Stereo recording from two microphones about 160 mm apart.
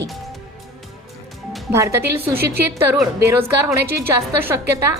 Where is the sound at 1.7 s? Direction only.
15° right (ahead or behind).